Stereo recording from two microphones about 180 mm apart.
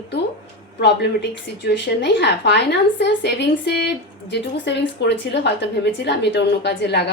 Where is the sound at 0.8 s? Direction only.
70° left (ahead or behind).